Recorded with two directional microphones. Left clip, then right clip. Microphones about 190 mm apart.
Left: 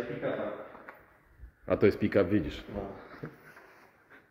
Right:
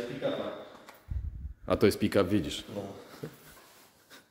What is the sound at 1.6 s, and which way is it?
Speech, 15° right (ahead or behind).